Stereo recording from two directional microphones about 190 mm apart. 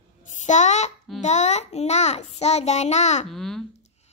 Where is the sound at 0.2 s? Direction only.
40° left (ahead or behind).